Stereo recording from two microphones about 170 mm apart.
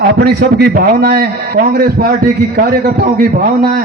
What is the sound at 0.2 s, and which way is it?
A man's voice, 70° right (ahead or behind).